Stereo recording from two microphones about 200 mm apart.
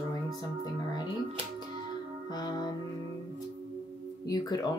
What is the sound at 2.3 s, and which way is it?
Speech, 20° left (ahead or behind).